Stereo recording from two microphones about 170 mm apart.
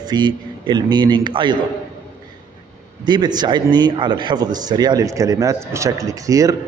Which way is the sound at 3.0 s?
25° right (ahead or behind).